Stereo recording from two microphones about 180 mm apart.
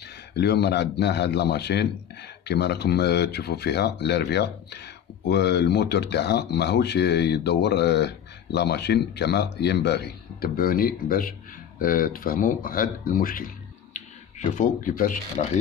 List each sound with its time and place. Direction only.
0.4 s speech: 65° left (ahead or behind); by 13.5 s 50° left (ahead or behind)
14.5 s speech: 45° left (ahead or behind)